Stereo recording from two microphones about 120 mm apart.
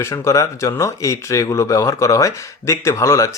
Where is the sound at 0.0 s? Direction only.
25° left (ahead or behind).